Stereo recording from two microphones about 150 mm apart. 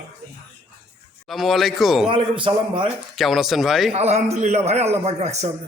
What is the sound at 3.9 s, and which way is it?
A man's voice, 45° right (ahead or behind).